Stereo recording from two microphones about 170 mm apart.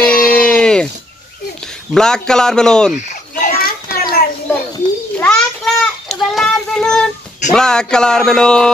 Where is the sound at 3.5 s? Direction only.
60° left (ahead or behind).